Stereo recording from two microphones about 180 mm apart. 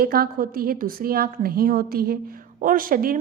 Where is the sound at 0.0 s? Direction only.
55° right (ahead or behind).